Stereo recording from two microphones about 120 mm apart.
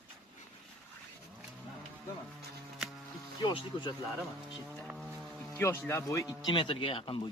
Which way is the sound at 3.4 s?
40° left (ahead or behind).